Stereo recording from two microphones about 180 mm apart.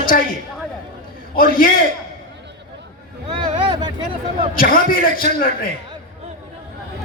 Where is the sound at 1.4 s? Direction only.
50° left (ahead or behind).